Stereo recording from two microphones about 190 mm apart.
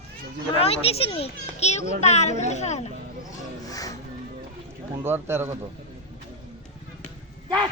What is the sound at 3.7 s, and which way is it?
Music, 20° left (ahead or behind).